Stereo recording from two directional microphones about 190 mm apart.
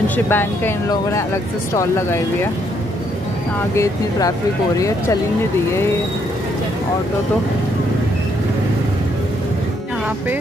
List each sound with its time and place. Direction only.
0.1 s speech: 10° left (ahead or behind)
3.7 s speech: 15° left (ahead or behind)